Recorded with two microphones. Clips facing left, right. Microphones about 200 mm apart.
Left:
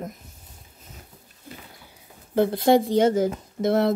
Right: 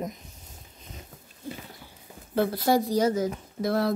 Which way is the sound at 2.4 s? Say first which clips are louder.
Left 5 dB; 25° left (ahead or behind).